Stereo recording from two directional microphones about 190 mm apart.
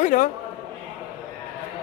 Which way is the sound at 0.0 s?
45° left (ahead or behind).